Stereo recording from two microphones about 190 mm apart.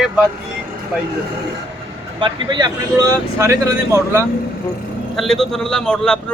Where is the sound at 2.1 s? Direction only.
25° right (ahead or behind).